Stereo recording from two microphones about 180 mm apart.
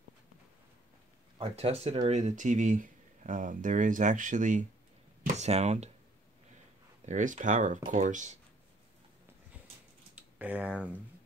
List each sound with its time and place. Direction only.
1.4 s speech: 35° right (ahead or behind)
7.1 s speech: 45° right (ahead or behind)
10.1 s speech: 5° right (ahead or behind)